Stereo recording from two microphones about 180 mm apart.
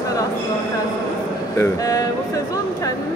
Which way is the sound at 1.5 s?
15° left (ahead or behind).